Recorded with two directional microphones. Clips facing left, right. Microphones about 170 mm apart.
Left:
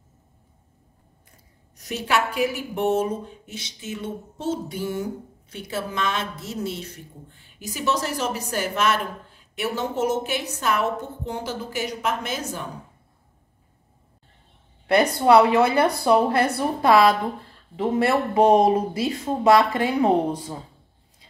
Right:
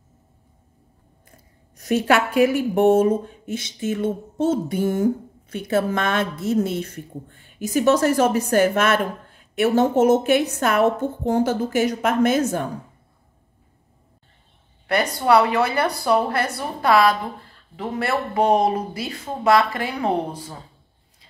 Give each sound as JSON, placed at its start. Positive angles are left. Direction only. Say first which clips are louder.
{"t": 1.8, "sound": "speech", "louder": "right 6 dB", "side_deg": -50}
{"t": 15.2, "sound": "speech", "louder": "left 1 dB", "side_deg": 25}